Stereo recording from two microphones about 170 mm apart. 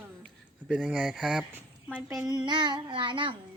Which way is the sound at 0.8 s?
Centre (ahead or behind).